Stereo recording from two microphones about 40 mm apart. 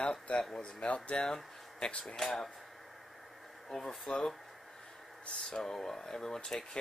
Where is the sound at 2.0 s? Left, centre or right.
Centre.